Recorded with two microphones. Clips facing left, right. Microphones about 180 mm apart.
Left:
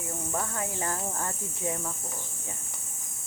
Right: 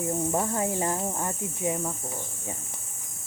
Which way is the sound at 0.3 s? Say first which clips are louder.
Right 3 dB; 25° right (ahead or behind).